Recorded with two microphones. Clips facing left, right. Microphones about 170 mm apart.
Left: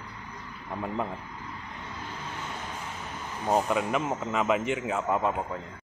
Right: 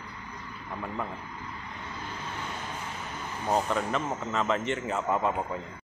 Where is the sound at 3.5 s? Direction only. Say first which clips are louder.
Left 2 dB; 10° left (ahead or behind).